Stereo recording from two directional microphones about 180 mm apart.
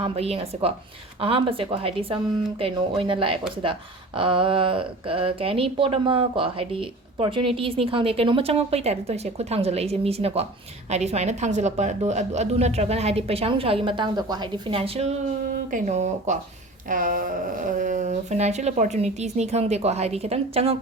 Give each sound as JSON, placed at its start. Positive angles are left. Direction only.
{"t": 0.0, "sound": "speech", "side_deg": -30}